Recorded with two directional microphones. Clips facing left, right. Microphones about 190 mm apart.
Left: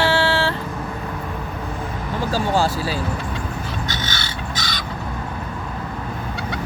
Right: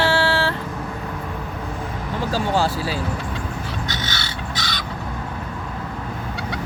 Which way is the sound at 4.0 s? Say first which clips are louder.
Left 1 dB; 45° left (ahead or behind).